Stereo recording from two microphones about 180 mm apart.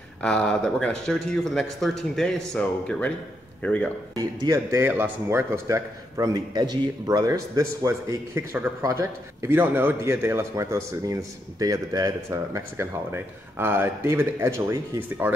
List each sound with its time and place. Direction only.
0.2 s speech: 5° left (ahead or behind)
4.1 s speech: 20° right (ahead or behind)